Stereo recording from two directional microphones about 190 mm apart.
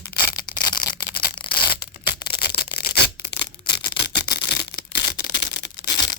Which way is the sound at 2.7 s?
60° left (ahead or behind).